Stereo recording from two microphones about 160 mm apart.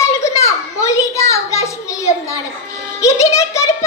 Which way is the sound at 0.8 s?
20° left (ahead or behind).